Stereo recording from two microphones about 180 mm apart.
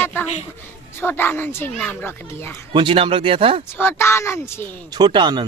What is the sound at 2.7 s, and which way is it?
Speech, 30° right (ahead or behind).